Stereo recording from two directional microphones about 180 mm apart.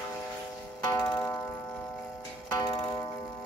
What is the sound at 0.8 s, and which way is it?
Music, 15° left (ahead or behind).